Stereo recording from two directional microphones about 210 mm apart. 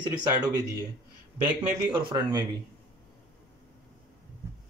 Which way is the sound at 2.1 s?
20° right (ahead or behind).